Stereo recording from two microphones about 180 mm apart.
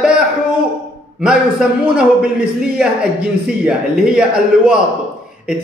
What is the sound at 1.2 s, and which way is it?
Speech, 5° right (ahead or behind).